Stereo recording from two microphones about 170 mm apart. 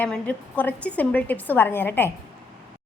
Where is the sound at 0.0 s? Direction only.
10° left (ahead or behind).